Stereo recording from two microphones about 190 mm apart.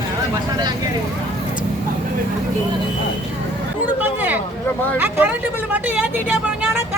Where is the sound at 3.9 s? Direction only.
10° right (ahead or behind).